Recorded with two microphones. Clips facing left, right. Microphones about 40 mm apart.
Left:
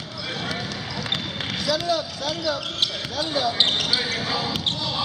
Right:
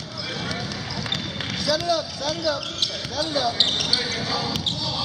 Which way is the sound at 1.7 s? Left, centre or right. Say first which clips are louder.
Right 1 dB; centre.